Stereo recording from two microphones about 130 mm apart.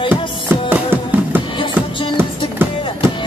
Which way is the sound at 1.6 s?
40° left (ahead or behind).